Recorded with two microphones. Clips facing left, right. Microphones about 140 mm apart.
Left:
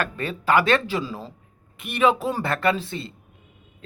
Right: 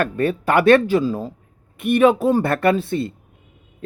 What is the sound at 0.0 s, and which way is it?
A man's voice, 55° right (ahead or behind).